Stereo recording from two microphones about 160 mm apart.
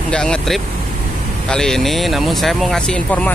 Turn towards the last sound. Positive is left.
turn(degrees=5)  # may be behind; listen again after turning